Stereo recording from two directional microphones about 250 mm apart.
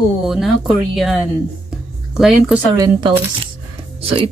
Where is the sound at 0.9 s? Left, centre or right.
Centre.